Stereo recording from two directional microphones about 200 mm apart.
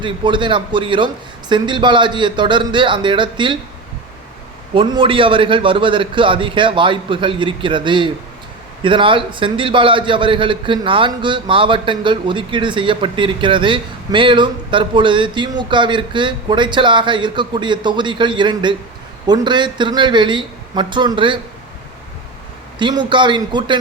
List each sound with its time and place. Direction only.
0.0 s a man's voice: 25° right (ahead or behind)
4.7 s a man's voice: 25° right (ahead or behind)
22.8 s a man's voice: 20° right (ahead or behind)